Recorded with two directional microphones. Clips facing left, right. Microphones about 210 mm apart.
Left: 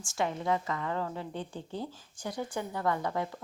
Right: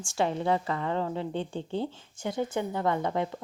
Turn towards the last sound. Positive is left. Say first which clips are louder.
# right 3 dB
turn(degrees=-25)  # may be behind; listen again after turning